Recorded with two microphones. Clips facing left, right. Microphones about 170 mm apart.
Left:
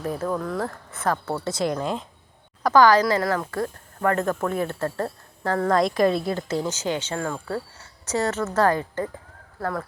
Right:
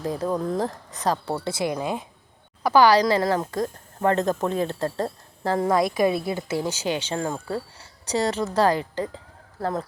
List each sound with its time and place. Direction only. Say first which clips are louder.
0.0 s a woman's voice: right 1 dB; 15° right (ahead or behind)
5.7 s speech: left 2 dB; 5° right (ahead or behind); by 9.8 s 25° right (ahead or behind)